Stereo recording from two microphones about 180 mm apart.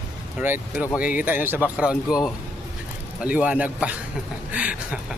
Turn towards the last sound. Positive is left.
turn(degrees=-5)  # may be behind; listen again after turning